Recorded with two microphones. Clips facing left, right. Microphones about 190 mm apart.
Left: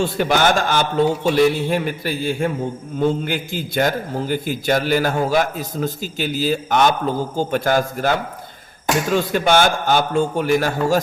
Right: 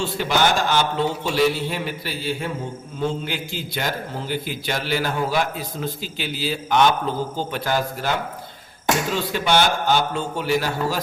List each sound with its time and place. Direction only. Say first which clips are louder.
0.0 s a man's voice: left 4 dB; 50° left (ahead or behind)
9.1 s a man's voice: left 6 dB; 50° left (ahead or behind)